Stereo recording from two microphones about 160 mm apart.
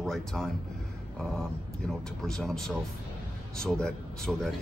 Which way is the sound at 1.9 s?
5° left (ahead or behind).